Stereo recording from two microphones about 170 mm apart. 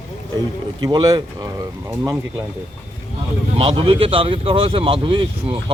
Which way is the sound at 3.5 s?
35° right (ahead or behind).